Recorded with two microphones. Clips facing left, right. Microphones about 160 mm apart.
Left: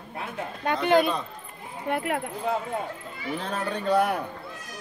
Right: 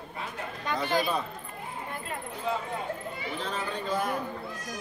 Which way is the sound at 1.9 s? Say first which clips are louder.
Left 9 dB; 70° left (ahead or behind).